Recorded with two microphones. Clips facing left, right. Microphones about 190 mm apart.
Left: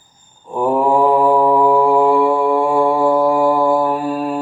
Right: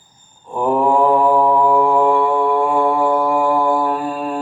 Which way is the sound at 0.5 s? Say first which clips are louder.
Left 1 dB; 5° left (ahead or behind).